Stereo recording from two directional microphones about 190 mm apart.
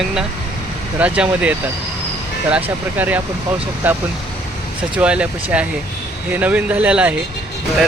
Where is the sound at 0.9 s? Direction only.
5° right (ahead or behind).